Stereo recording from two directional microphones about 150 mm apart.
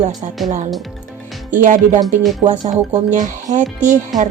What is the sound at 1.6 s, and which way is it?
Speech, 60° right (ahead or behind).